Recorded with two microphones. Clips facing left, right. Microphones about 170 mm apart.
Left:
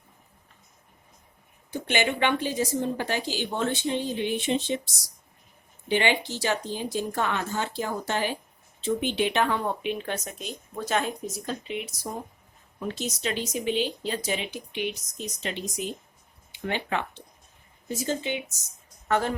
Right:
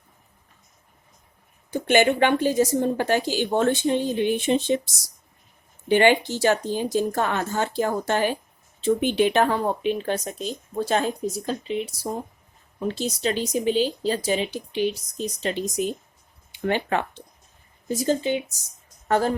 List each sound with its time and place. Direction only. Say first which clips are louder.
1.7 s speech: right 8 dB; 45° right (ahead or behind)
5.9 s speech: right 7 dB; 50° right (ahead or behind)